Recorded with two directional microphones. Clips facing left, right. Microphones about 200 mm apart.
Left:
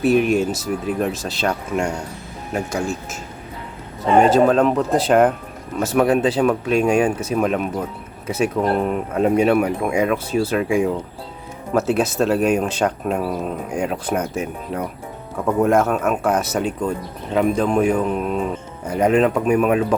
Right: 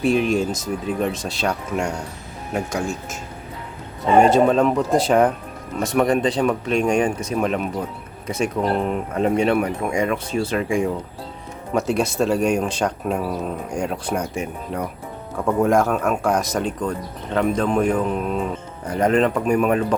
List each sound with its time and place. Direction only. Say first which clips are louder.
0.0 s speech: left 2 dB; 5° left (ahead or behind)
4.2 s speech: left 1 dB; centre (ahead or behind)